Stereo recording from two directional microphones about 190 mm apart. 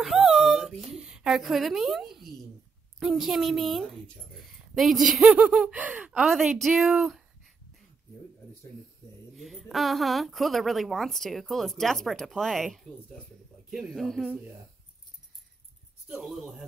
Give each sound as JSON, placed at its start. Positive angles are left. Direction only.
{"t": 0.0, "sound": "a sound", "side_deg": 0}
{"t": 3.0, "sound": "speech", "side_deg": -5}
{"t": 9.3, "sound": "speech", "side_deg": 0}
{"t": 16.1, "sound": "speech", "side_deg": 0}